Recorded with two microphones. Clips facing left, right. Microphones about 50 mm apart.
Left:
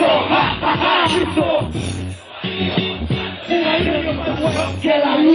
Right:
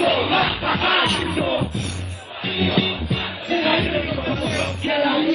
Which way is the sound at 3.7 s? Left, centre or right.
Left.